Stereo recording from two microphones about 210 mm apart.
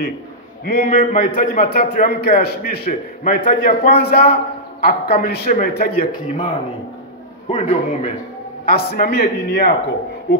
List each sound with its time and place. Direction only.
0.7 s a man's voice: 50° left (ahead or behind)
0.9 s a man's voice: 40° left (ahead or behind)
6.2 s a man's voice: 25° left (ahead or behind)
8.6 s a man's voice: 45° left (ahead or behind)